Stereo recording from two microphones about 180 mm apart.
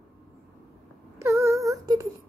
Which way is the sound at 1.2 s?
15° right (ahead or behind).